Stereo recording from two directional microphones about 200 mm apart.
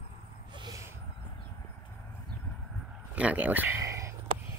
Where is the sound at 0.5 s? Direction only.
20° right (ahead or behind).